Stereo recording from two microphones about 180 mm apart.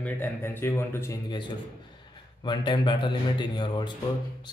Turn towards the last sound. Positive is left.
turn(degrees=25)  # may be behind; listen again after turning